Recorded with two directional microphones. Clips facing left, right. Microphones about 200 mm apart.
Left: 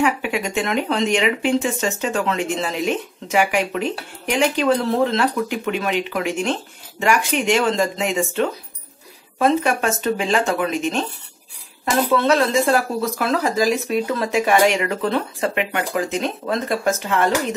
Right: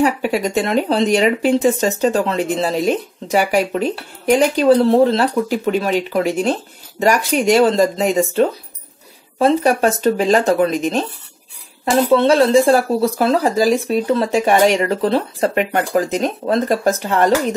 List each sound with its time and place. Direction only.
0.0 s speech: 35° right (ahead or behind)